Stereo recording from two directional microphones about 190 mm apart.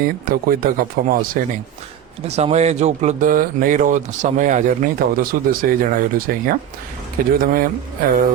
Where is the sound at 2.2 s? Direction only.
35° right (ahead or behind).